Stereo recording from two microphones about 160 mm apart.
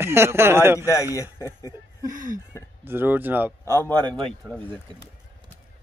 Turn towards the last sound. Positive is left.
turn(degrees=15)  # may be behind; listen again after turning